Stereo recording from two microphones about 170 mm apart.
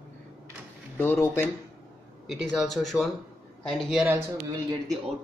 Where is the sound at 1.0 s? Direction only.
10° left (ahead or behind).